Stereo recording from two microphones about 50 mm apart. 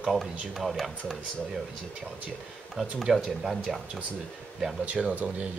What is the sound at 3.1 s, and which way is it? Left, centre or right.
Speech, centre.